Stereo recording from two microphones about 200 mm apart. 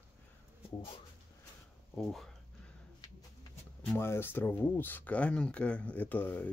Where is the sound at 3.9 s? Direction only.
10° left (ahead or behind).